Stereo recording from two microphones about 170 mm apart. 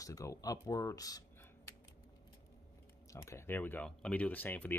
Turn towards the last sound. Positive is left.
turn(degrees=10)  # may be behind; listen again after turning